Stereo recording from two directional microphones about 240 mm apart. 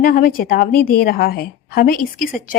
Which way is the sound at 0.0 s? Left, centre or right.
Left.